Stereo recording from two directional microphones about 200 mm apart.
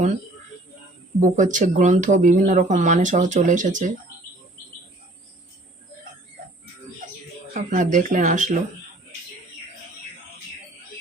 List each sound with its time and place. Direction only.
1.2 s speech: 40° right (ahead or behind)
7.5 s speech: 40° right (ahead or behind)